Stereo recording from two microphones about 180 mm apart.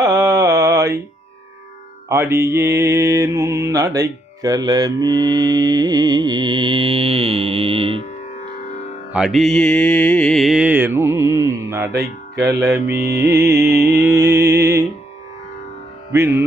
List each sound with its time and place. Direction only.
0.0 s mantra: 20° right (ahead or behind)
2.0 s mantra: 15° right (ahead or behind); by 8.0 s 30° right (ahead or behind)
9.1 s music: centre (ahead or behind)
16.1 s music: 15° right (ahead or behind)